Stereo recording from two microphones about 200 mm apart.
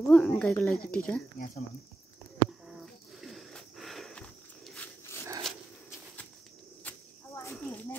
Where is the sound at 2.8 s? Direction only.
Centre (ahead or behind).